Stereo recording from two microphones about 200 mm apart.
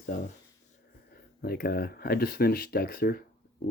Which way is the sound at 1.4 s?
50° left (ahead or behind).